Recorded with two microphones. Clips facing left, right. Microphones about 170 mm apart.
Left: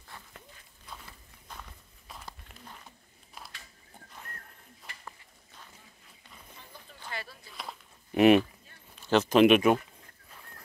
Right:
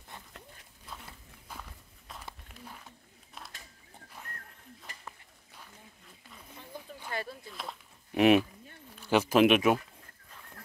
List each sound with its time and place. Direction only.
1.5 s walk: 5° right (ahead or behind)
7.1 s a sound: 45° right (ahead or behind)
7.5 s bird: centre (ahead or behind)
9.0 s speech: 10° right (ahead or behind)